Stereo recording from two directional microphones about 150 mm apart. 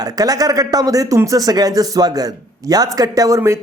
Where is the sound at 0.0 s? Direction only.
25° right (ahead or behind).